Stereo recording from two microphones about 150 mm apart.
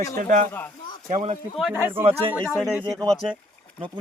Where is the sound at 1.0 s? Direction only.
45° right (ahead or behind).